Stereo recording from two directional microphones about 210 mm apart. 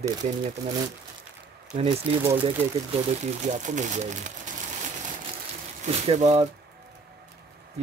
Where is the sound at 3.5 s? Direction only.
35° right (ahead or behind).